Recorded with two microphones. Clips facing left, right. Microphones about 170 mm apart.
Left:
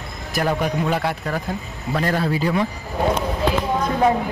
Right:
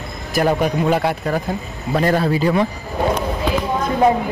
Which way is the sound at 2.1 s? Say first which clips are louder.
Right 3 dB; 40° right (ahead or behind).